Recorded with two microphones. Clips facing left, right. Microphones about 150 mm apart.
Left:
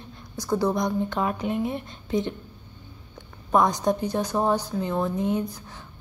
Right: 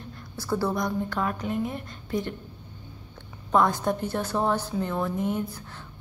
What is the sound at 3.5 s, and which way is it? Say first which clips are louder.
A woman's voice: left 2 dB; 15° left (ahead or behind).